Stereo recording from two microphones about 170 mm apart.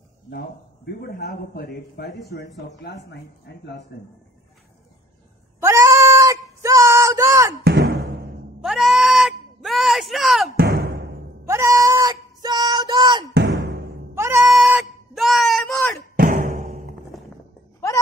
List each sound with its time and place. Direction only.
1.0 s a man's voice: 60° left (ahead or behind)
2.8 s speech: 90° left
5.6 s a sound: 15° right (ahead or behind)
7.6 s music: 70° right (ahead or behind)
8.6 s sheep: centre (ahead or behind)
10.5 s music: 65° right (ahead or behind)
11.4 s a sound: 15° right (ahead or behind)
13.3 s music: 85° right
14.1 s goat: 15° right (ahead or behind)
14.6 s a sound: 5° right (ahead or behind)
16.2 s music: 50° right (ahead or behind)